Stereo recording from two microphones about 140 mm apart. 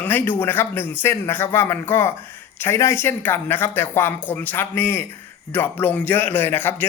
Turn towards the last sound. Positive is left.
turn(degrees=15)  # may be behind; listen again after turning